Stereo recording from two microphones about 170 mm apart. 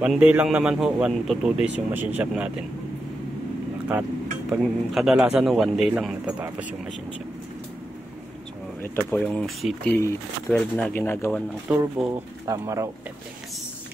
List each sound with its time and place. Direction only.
0.0 s a man's voice: 10° right (ahead or behind)
4.5 s speech: centre (ahead or behind)
8.8 s speech: 10° left (ahead or behind)
11.7 s a man's voice: 5° right (ahead or behind)
12.4 s speech: 20° right (ahead or behind)